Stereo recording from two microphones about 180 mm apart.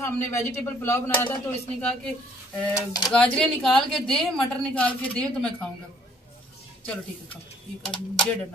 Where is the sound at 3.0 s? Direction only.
5° left (ahead or behind).